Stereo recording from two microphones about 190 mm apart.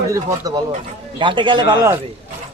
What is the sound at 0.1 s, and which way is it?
A man's voice, 20° right (ahead or behind).